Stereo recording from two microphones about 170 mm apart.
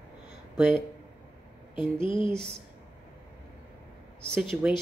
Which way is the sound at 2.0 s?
30° left (ahead or behind).